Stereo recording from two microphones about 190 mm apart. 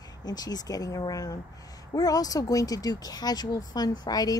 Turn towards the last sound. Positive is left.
turn(degrees=20)  # may be behind; listen again after turning